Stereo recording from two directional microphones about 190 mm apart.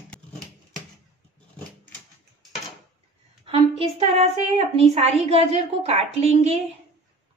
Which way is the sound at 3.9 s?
35° right (ahead or behind).